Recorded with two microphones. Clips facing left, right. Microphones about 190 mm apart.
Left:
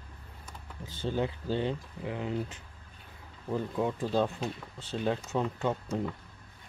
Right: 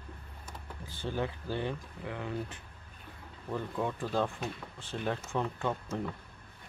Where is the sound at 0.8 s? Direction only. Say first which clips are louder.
Left 3 dB; 20° left (ahead or behind).